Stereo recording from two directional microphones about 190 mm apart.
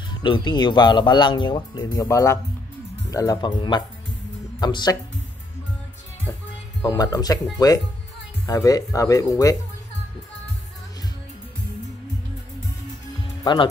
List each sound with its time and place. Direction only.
0.1 s speech: 25° left (ahead or behind)
6.8 s speech: 20° left (ahead or behind)
13.2 s music: 25° left (ahead or behind)